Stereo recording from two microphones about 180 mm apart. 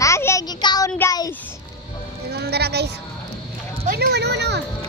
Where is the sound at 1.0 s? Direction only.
20° left (ahead or behind).